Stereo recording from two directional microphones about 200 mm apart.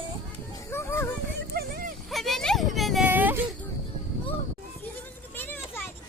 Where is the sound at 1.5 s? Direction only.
50° right (ahead or behind).